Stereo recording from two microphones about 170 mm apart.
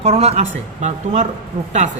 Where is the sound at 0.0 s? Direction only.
35° right (ahead or behind).